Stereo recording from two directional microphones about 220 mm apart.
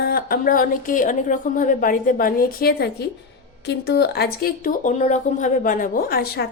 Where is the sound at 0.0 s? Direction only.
40° left (ahead or behind).